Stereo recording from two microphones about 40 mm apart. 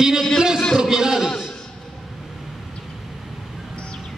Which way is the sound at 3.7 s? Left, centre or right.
Left.